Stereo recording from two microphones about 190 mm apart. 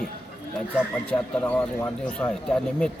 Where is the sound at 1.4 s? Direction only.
10° left (ahead or behind).